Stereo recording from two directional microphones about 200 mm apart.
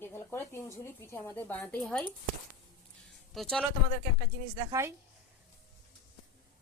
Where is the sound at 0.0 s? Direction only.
10° left (ahead or behind).